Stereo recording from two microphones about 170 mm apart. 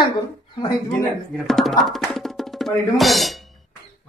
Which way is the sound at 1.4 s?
Centre (ahead or behind).